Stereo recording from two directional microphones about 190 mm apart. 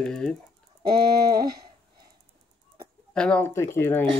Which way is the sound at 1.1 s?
55° right (ahead or behind).